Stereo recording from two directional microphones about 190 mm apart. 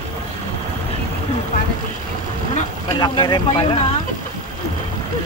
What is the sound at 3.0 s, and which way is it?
Speech, 20° left (ahead or behind).